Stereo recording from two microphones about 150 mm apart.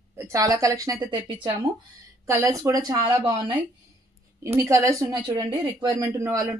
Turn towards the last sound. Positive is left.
turn(degrees=-20)  # may be behind; listen again after turning